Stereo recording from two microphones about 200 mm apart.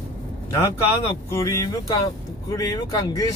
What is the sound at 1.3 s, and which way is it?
Speech, 15° left (ahead or behind).